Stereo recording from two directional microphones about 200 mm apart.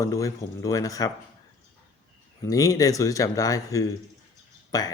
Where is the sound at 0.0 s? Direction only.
15° left (ahead or behind).